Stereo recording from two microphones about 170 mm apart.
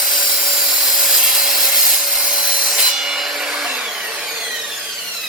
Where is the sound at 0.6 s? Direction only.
Centre (ahead or behind).